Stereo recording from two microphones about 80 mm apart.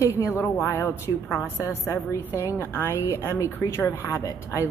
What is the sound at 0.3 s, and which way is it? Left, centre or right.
A woman's voice, left.